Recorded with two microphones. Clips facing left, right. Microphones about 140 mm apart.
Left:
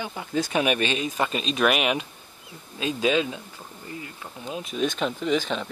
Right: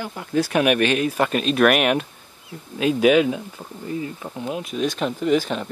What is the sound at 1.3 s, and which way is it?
Speech, 60° right (ahead or behind).